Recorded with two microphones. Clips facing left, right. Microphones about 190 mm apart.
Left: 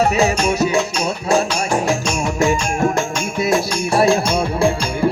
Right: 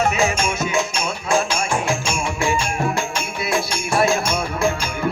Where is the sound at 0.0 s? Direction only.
35° left (ahead or behind).